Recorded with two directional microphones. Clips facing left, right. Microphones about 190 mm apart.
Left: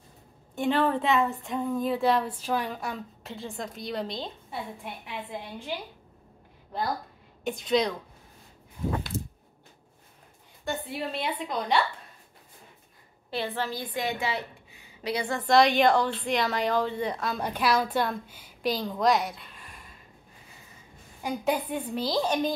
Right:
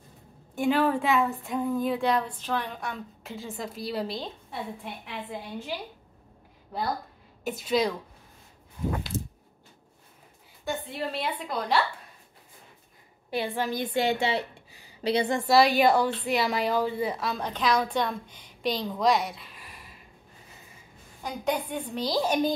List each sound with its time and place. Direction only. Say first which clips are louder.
0.6 s a woman's voice: right 1 dB; centre (ahead or behind)
7.4 s a woman's voice: even; 5° right (ahead or behind)
10.6 s a woman's voice: even; centre (ahead or behind)
13.3 s a woman's voice: right 2 dB; 10° right (ahead or behind)
13.9 s a woman's voice: right 5 dB; 30° right (ahead or behind)
15.3 s a woman's voice: left 1 dB; 5° right (ahead or behind)
17.4 s a woman's voice: left 1 dB; 10° left (ahead or behind)
21.2 s a woman's voice: left 1 dB; 5° left (ahead or behind); by 22.5 s 10° right (ahead or behind)